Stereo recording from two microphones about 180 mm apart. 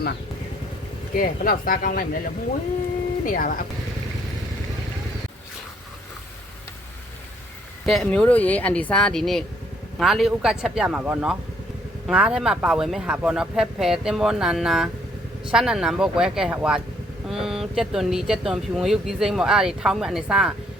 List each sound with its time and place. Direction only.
1.1 s speech: 50° left (ahead or behind)
7.9 s speech: centre (ahead or behind)